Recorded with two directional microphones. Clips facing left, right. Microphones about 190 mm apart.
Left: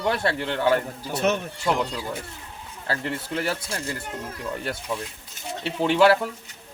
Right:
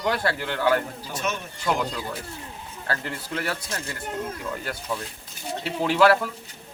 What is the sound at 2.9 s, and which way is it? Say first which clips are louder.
Speech: left 2 dB; 25° left (ahead or behind).